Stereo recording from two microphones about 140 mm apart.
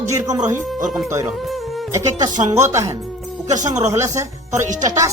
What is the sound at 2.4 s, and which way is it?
Speech, 20° right (ahead or behind).